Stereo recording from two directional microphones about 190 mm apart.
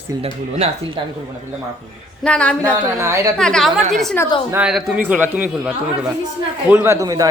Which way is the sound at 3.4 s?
5° left (ahead or behind).